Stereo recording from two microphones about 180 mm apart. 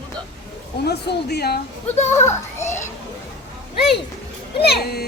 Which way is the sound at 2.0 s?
15° left (ahead or behind).